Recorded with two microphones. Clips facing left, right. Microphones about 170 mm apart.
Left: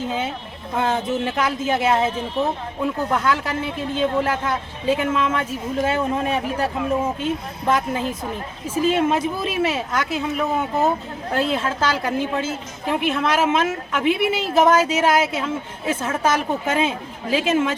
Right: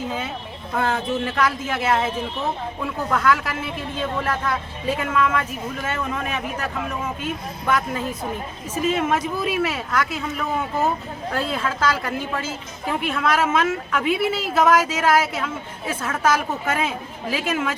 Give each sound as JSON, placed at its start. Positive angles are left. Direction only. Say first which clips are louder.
{"t": 0.8, "sound": "speech", "louder": "left 1 dB", "side_deg": 25}
{"t": 11.3, "sound": "speech", "louder": "left 3 dB", "side_deg": 25}